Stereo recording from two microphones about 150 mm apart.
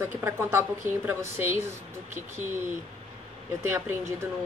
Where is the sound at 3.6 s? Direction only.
15° right (ahead or behind).